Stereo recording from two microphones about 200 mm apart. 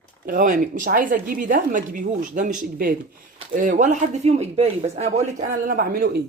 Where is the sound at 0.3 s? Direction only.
40° right (ahead or behind).